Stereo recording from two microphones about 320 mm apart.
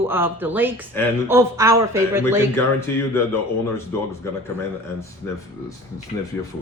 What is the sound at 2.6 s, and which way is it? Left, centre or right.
Speech, centre.